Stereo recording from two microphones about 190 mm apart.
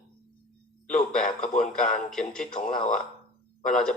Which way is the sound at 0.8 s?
5° left (ahead or behind).